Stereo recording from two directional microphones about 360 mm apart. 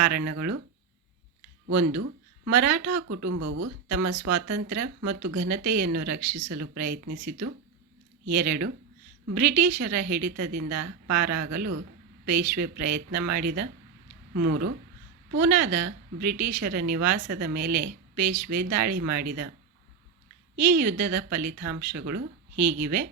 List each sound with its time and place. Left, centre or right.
0.0 s a woman's voice: right
1.7 s a woman's voice: right
20.6 s a woman's voice: right